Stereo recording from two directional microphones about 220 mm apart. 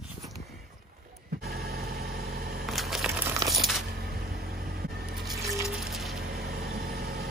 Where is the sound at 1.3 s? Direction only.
45° right (ahead or behind).